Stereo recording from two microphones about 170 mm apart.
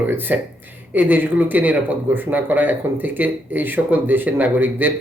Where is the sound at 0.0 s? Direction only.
10° right (ahead or behind).